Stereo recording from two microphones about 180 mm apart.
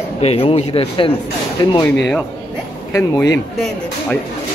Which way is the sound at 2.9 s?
15° left (ahead or behind).